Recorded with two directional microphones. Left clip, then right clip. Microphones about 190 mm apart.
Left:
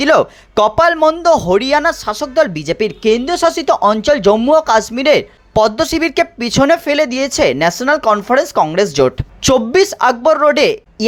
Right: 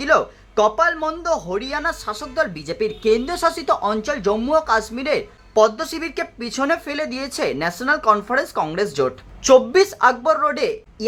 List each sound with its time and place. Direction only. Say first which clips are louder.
0.0 s speech: left 6 dB; 40° left (ahead or behind)